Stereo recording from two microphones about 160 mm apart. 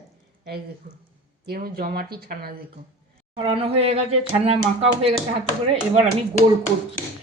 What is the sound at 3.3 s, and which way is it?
Speech, 35° right (ahead or behind).